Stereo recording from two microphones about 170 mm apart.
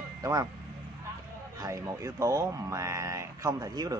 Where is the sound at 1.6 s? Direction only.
20° right (ahead or behind).